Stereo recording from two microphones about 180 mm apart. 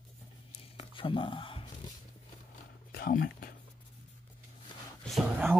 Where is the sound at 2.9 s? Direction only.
55° left (ahead or behind).